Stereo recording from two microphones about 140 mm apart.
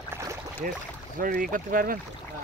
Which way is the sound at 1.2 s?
80° right.